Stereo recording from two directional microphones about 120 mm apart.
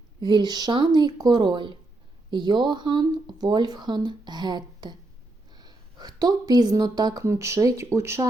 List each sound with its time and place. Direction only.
0.2 s speech: 40° right (ahead or behind); by 8.3 s 20° right (ahead or behind)